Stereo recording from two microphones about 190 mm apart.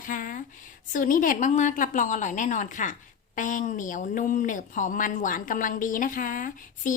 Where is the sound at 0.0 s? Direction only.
45° left (ahead or behind).